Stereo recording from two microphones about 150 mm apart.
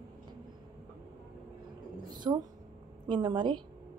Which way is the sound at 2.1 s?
30° right (ahead or behind).